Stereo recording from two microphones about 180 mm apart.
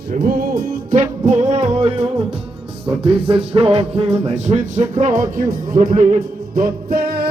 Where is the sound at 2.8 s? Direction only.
30° right (ahead or behind).